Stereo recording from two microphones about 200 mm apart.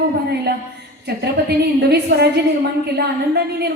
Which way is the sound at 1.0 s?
55° right (ahead or behind).